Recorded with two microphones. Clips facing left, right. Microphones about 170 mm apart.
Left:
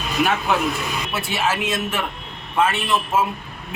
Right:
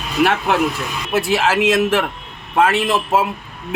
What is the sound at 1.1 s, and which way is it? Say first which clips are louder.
Speech: right 8 dB; 90° right.